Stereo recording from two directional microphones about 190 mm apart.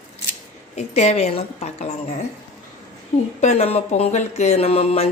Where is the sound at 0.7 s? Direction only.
35° left (ahead or behind).